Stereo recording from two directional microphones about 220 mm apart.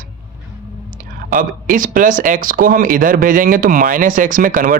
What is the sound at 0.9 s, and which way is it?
Speech, 35° right (ahead or behind).